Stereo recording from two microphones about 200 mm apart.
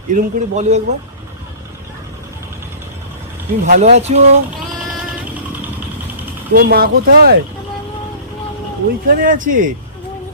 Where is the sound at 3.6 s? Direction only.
35° right (ahead or behind).